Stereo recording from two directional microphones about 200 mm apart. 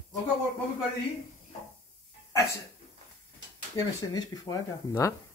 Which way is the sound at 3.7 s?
20° left (ahead or behind).